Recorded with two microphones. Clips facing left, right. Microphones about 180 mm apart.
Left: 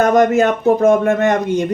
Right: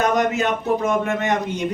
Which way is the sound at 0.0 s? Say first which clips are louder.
Left 7 dB; 50° left (ahead or behind).